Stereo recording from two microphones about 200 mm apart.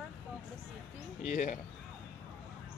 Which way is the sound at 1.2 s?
40° left (ahead or behind).